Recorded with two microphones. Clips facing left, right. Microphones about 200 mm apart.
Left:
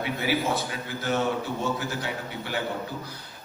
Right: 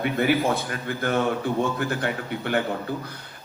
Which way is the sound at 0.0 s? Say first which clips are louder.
Right 5 dB; 55° right (ahead or behind).